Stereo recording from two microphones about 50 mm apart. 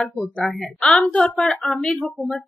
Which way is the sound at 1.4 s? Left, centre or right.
Centre.